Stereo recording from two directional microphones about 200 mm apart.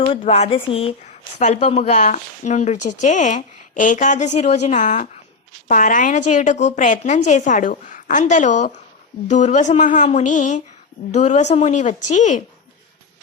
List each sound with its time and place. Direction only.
0.2 s a woman's voice: 30° left (ahead or behind)